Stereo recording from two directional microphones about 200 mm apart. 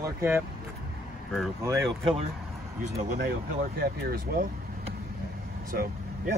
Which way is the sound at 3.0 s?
45° right (ahead or behind).